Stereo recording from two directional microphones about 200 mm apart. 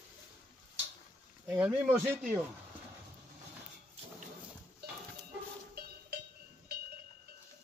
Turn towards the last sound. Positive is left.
turn(degrees=-55)  # may be behind; listen again after turning